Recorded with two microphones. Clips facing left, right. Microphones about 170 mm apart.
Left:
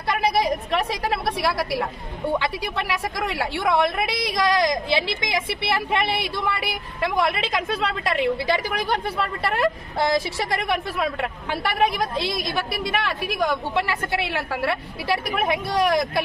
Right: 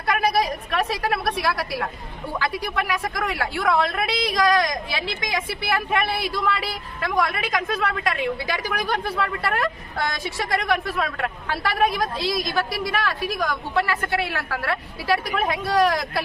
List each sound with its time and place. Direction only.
0.2 s a woman's voice: 25° left (ahead or behind)